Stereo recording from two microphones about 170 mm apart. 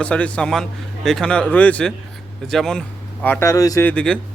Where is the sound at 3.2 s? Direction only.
15° left (ahead or behind).